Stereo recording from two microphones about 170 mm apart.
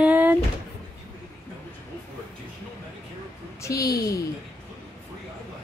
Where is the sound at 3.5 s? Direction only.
20° left (ahead or behind).